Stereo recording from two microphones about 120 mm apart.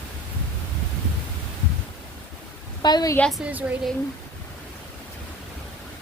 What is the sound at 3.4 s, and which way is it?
Speech, 15° right (ahead or behind).